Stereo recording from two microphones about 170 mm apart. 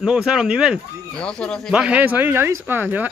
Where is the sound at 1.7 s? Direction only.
5° right (ahead or behind).